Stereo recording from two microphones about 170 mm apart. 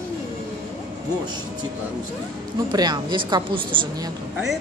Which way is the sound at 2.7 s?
25° right (ahead or behind).